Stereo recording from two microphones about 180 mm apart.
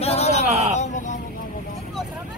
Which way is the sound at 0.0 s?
35° left (ahead or behind).